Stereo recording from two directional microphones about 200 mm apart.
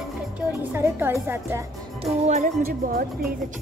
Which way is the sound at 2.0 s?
35° right (ahead or behind).